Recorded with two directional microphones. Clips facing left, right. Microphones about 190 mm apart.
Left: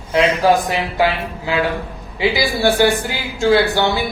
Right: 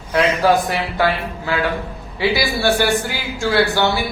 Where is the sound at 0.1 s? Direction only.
15° left (ahead or behind).